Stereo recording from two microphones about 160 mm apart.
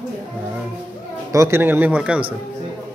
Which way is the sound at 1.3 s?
20° right (ahead or behind).